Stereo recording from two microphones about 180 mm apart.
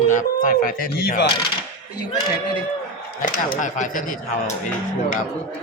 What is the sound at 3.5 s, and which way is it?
Speech, 45° left (ahead or behind).